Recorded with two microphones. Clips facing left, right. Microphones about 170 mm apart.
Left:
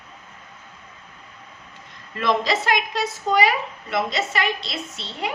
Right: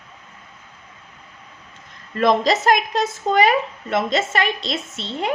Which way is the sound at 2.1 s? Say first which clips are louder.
Right 5 dB; 45° right (ahead or behind).